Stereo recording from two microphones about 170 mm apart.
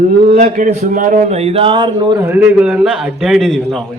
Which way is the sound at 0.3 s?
45° right (ahead or behind).